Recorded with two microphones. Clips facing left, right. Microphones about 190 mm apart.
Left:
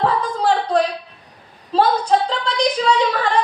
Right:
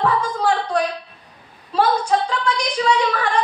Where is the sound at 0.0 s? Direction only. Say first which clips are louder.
Left 1 dB; 35° left (ahead or behind).